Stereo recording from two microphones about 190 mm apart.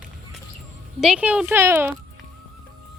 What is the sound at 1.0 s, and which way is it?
Speech, 5° right (ahead or behind).